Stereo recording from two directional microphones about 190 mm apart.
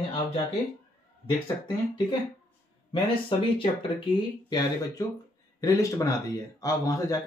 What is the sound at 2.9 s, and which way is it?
Speech, 25° left (ahead or behind).